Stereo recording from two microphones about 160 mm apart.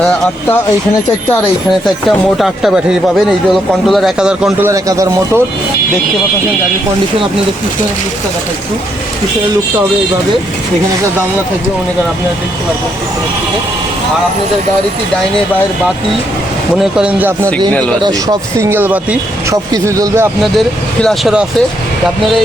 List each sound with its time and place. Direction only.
2.0 s speech: centre (ahead or behind)
4.7 s speech: 20° right (ahead or behind)
17.0 s speech: 10° right (ahead or behind)
18.0 s speech: 20° right (ahead or behind)
20.4 s speech: centre (ahead or behind)